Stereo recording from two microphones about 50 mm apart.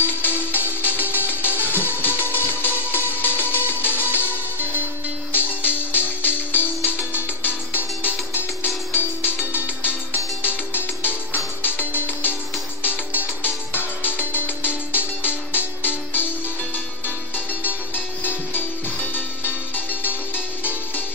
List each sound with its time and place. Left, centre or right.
0.0 s music: left
5.3 s music: left
17.6 s music: left